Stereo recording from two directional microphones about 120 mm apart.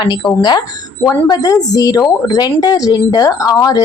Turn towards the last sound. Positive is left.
turn(degrees=30)  # may be behind; listen again after turning